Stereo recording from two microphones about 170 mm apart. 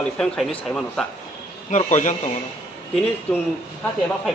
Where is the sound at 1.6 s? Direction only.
45° left (ahead or behind).